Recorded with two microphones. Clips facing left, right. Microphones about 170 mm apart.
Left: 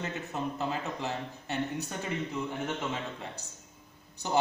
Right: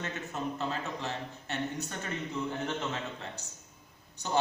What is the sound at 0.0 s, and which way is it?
A man's voice, 15° left (ahead or behind).